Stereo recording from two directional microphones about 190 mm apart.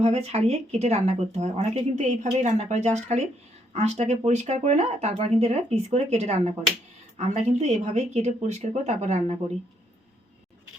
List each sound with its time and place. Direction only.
0.0 s speech: 35° right (ahead or behind)